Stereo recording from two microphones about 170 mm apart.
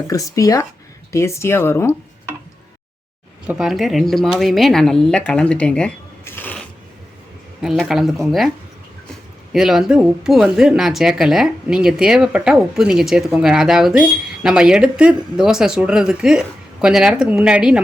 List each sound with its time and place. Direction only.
0.1 s speech: 20° left (ahead or behind)
3.4 s a woman's voice: 5° right (ahead or behind)
7.6 s speech: centre (ahead or behind)
9.5 s speech: centre (ahead or behind)